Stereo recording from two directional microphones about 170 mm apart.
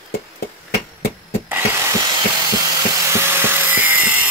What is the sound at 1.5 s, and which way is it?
Wood, 15° right (ahead or behind).